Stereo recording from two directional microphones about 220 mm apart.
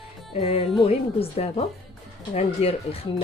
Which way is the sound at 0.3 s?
25° left (ahead or behind).